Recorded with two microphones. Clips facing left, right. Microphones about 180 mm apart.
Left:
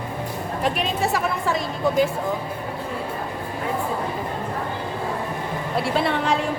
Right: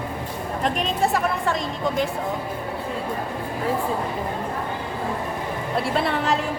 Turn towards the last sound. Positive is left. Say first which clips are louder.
# left 1 dB
turn(degrees=0)  # may be behind; listen again after turning